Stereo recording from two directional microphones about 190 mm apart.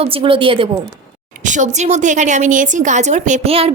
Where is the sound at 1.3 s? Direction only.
40° right (ahead or behind).